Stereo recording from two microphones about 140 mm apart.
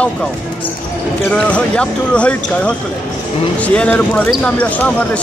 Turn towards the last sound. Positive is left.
turn(degrees=10)  # may be behind; listen again after turning